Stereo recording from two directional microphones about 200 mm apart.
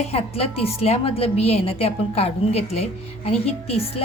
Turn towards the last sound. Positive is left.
turn(degrees=30)  # may be behind; listen again after turning